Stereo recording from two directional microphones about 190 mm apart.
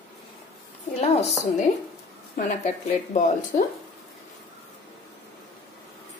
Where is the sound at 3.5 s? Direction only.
50° left (ahead or behind).